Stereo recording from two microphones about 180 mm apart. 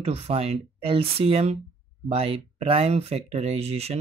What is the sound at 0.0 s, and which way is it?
Speech, 35° right (ahead or behind).